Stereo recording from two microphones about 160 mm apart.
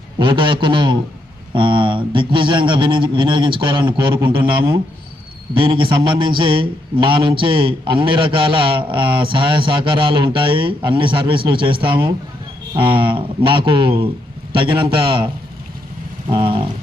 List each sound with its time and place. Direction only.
0.2 s speech: 30° right (ahead or behind)
16.3 s speech: 30° right (ahead or behind)